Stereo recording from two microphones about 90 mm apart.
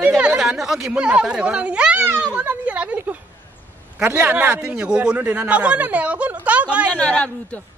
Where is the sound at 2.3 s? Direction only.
15° right (ahead or behind).